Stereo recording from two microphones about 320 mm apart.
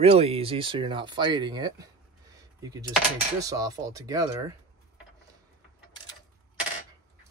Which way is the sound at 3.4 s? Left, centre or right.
Centre.